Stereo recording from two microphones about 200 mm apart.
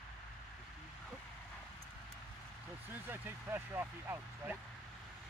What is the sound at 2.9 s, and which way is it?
Speech, 10° right (ahead or behind).